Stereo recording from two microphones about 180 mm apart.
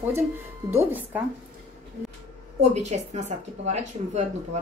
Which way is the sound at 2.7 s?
40° right (ahead or behind).